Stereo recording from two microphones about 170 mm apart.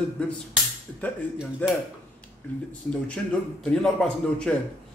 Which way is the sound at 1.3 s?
5° right (ahead or behind).